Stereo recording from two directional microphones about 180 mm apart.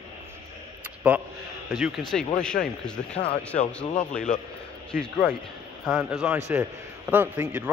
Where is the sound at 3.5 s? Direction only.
40° left (ahead or behind).